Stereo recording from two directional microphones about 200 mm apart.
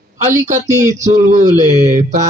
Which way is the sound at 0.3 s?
40° right (ahead or behind).